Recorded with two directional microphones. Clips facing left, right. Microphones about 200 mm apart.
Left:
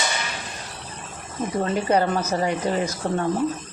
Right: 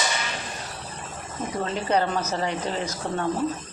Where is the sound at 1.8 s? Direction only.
10° left (ahead or behind).